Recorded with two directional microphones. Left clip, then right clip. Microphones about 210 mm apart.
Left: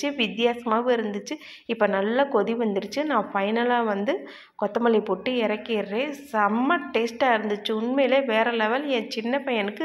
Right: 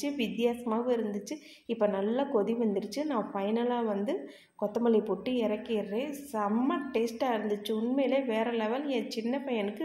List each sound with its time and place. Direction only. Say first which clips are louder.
0.0 s a woman's voice: left 7 dB; 10° left (ahead or behind)